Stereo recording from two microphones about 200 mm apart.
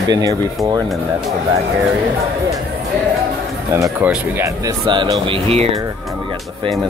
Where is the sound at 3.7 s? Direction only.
10° right (ahead or behind); by 5.8 s 30° right (ahead or behind).